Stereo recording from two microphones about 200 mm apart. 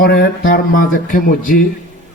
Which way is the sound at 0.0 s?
45° left (ahead or behind).